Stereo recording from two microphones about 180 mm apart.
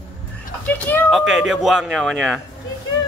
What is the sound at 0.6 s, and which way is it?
Speech, 10° left (ahead or behind).